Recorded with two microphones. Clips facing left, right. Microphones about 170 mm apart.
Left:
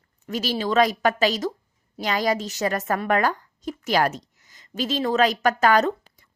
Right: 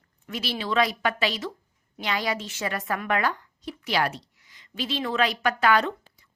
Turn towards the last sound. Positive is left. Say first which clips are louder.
# left 5 dB
turn(degrees=40)  # may be behind; listen again after turning